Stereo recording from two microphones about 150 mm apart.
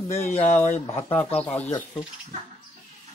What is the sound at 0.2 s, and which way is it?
Speech, 50° left (ahead or behind).